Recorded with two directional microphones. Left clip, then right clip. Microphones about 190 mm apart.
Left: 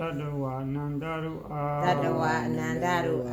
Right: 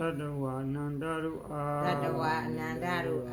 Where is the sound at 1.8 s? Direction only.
35° left (ahead or behind).